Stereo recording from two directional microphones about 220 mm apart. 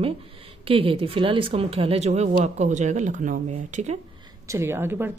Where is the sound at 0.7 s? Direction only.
25° right (ahead or behind).